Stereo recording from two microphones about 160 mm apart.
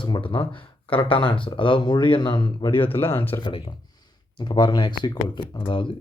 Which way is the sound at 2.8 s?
15° left (ahead or behind).